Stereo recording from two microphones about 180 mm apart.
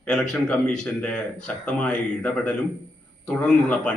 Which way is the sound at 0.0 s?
5° left (ahead or behind).